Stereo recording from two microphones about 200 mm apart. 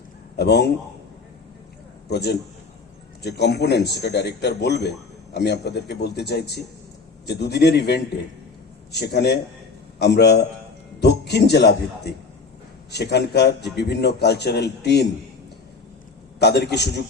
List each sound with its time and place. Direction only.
0.3 s a man's voice: 55° left (ahead or behind)
2.0 s a man's voice: 55° left (ahead or behind)
16.4 s a man's voice: 55° left (ahead or behind)